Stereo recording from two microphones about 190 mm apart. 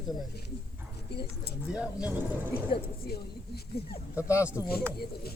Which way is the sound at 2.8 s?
55° left (ahead or behind).